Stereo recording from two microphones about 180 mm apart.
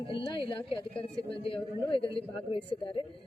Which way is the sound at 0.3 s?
30° left (ahead or behind).